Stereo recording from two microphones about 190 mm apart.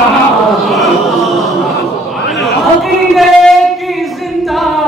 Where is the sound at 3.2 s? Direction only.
Centre (ahead or behind).